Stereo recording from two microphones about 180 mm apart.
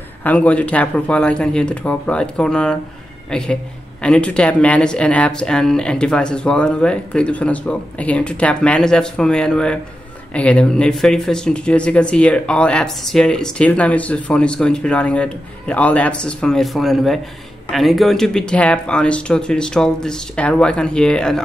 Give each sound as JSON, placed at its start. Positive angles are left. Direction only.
{"t": 0.2, "sound": "speech", "side_deg": 10}